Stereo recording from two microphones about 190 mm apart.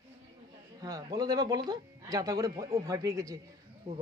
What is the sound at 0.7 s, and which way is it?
A man's voice, 20° right (ahead or behind).